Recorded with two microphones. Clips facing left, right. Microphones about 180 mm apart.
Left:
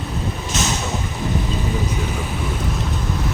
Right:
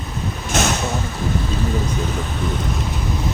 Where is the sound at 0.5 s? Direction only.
55° right (ahead or behind).